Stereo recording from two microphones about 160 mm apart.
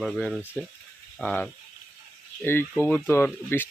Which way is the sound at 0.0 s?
Centre (ahead or behind).